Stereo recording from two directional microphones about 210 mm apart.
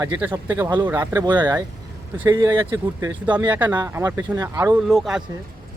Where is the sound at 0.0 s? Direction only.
10° right (ahead or behind).